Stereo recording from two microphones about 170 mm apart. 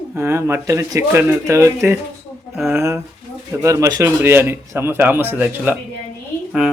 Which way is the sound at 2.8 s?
15° right (ahead or behind).